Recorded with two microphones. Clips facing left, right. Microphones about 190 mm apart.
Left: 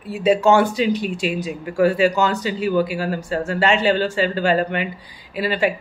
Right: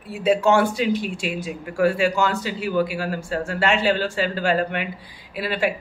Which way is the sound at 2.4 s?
Centre (ahead or behind).